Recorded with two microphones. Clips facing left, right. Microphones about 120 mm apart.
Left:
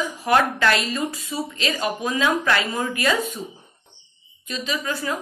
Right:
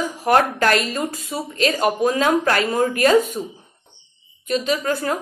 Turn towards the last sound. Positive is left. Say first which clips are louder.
# right 5 dB
turn(degrees=-50)  # may be behind; listen again after turning